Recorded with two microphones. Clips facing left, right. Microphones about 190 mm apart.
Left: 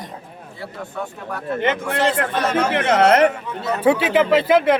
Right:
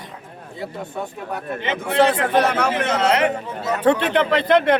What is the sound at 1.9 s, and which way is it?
Speech, 60° right (ahead or behind).